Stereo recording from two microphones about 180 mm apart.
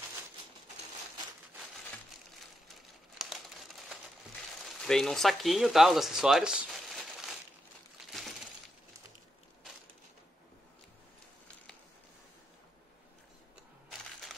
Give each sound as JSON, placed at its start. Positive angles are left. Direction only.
{"t": 3.2, "sound": "crumpling", "side_deg": 0}
{"t": 4.6, "sound": "speech", "side_deg": 5}
{"t": 8.0, "sound": "a sound", "side_deg": 0}